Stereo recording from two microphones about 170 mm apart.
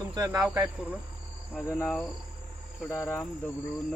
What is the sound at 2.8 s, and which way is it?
Speech, 15° left (ahead or behind).